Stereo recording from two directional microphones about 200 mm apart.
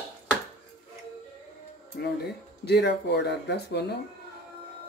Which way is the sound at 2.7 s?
60° left (ahead or behind).